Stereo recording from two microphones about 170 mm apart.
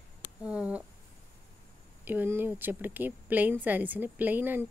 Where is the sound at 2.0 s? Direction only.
10° right (ahead or behind).